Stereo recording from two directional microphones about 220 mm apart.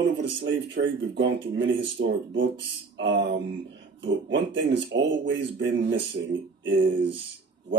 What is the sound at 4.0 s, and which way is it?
Speech, 55° right (ahead or behind).